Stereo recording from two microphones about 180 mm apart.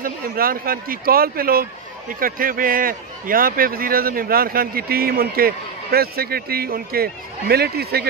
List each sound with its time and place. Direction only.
0.0 s a man's voice: 55° right (ahead or behind)